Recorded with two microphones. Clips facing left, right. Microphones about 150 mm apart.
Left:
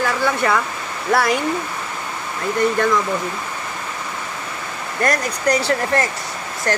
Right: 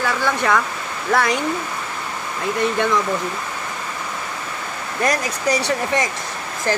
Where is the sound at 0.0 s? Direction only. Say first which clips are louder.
Left 1 dB; 5° left (ahead or behind).